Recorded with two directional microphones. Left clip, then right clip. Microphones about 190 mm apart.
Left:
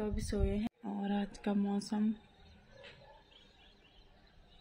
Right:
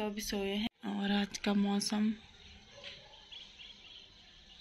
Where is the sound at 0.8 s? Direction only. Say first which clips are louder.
Right 3 dB; 5° right (ahead or behind).